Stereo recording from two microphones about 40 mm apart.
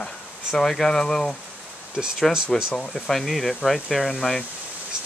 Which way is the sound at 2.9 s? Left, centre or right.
Centre.